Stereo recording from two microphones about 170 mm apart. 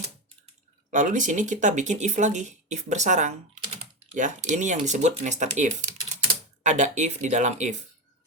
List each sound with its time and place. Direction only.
0.9 s speech: 50° right (ahead or behind)